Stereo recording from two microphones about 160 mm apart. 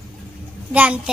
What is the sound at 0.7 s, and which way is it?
Speech, 10° right (ahead or behind).